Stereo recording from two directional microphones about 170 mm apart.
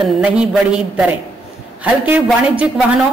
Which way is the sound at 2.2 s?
Centre (ahead or behind).